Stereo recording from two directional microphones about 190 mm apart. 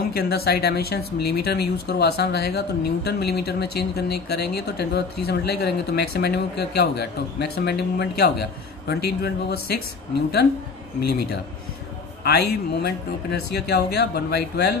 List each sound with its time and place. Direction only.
0.1 s speech: 55° left (ahead or behind)
12.3 s speech: 60° left (ahead or behind)